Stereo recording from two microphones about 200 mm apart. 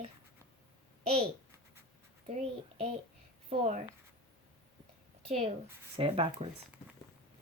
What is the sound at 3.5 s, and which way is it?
Speech, 35° right (ahead or behind).